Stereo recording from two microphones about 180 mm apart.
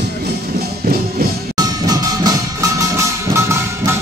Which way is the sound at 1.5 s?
20° right (ahead or behind).